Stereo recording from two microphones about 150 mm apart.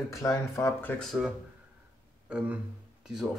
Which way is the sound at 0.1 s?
20° left (ahead or behind).